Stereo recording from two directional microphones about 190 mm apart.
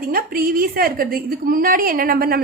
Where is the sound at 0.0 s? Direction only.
50° right (ahead or behind).